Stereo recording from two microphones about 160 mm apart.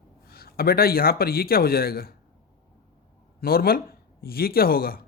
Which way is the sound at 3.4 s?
70° left (ahead or behind).